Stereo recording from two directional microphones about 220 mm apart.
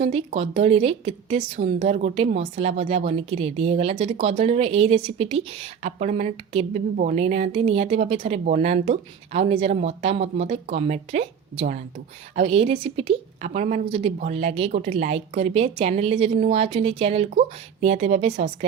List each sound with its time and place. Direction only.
0.0 s a woman's voice: 30° right (ahead or behind)